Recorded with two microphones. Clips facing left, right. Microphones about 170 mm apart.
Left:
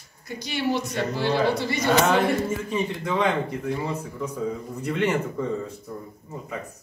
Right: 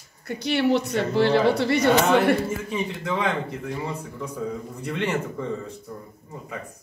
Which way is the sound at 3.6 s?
Centre (ahead or behind).